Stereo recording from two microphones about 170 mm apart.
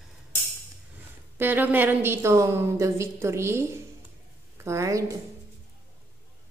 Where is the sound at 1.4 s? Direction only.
10° right (ahead or behind).